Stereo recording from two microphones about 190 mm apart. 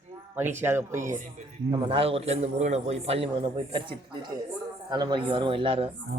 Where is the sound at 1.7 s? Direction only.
25° right (ahead or behind).